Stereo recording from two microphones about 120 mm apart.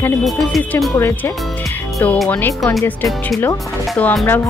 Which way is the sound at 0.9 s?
25° left (ahead or behind).